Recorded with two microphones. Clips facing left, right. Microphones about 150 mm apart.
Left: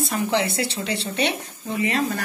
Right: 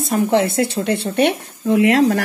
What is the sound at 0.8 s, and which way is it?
Speech, 60° right (ahead or behind).